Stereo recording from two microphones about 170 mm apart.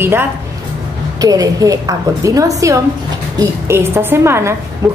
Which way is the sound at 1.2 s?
20° right (ahead or behind).